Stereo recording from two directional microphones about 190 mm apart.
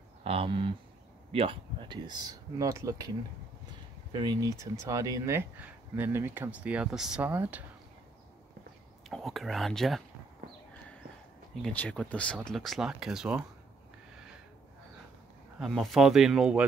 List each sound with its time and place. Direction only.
0.2 s speech: 30° right (ahead or behind)
4.1 s speech: 20° right (ahead or behind)
9.1 s speech: centre (ahead or behind)
11.6 s speech: 5° left (ahead or behind)
15.6 s speech: centre (ahead or behind)